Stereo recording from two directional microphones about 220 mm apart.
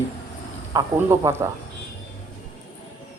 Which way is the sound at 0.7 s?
10° right (ahead or behind).